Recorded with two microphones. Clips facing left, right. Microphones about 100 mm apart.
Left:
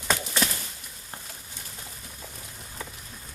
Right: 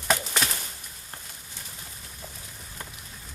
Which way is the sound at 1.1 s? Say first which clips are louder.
Left 2 dB; 15° left (ahead or behind).